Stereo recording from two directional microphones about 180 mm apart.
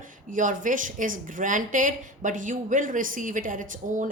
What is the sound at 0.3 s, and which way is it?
Speech, 45° right (ahead or behind).